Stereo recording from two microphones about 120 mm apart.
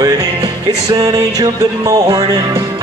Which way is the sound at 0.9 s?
35° right (ahead or behind).